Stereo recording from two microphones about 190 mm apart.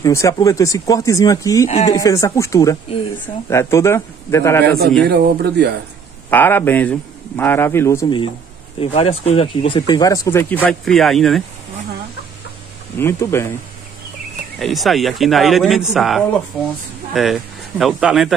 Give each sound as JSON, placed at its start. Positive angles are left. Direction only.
{"t": 0.0, "sound": "speech", "side_deg": 15}
{"t": 5.0, "sound": "speech", "side_deg": -60}
{"t": 6.3, "sound": "speech", "side_deg": 10}
{"t": 8.7, "sound": "speech", "side_deg": 30}
{"t": 13.0, "sound": "speech", "side_deg": 15}
{"t": 14.6, "sound": "speech", "side_deg": 0}